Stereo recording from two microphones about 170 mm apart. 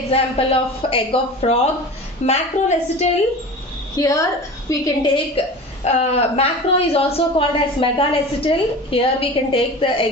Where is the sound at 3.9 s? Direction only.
20° left (ahead or behind).